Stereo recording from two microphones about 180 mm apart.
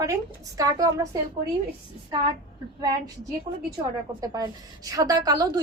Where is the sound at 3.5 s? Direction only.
40° right (ahead or behind).